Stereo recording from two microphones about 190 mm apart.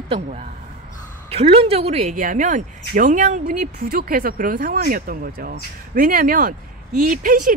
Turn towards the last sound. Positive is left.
turn(degrees=-45)  # may be behind; listen again after turning